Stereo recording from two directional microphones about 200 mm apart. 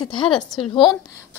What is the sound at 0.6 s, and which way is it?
Speech, 25° left (ahead or behind).